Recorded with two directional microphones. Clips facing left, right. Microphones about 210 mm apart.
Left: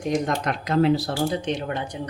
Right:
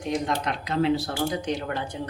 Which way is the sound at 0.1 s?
45° left (ahead or behind).